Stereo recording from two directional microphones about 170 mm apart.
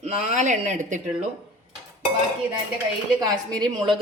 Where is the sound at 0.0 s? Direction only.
40° right (ahead or behind).